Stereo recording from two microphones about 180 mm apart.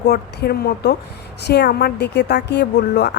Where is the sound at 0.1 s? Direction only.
60° left (ahead or behind).